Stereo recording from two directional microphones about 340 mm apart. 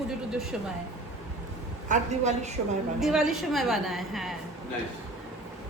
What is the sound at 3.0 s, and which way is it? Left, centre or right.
A woman's voice, centre.